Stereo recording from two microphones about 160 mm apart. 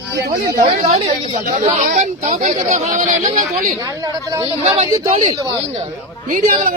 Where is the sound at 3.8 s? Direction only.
20° right (ahead or behind).